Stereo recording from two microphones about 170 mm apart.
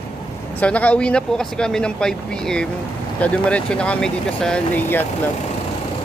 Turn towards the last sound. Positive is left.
turn(degrees=10)  # may be behind; listen again after turning